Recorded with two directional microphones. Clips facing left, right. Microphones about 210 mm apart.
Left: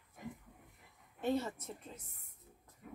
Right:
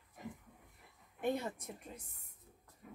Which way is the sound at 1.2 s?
15° right (ahead or behind).